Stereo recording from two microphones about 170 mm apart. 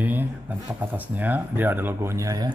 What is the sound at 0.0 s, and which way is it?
Speech, 10° right (ahead or behind).